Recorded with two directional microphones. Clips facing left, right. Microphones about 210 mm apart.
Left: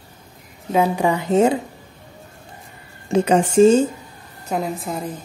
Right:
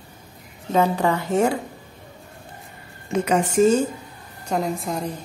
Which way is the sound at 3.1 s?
30° left (ahead or behind).